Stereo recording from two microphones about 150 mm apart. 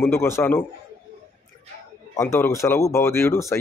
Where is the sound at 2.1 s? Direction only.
20° left (ahead or behind).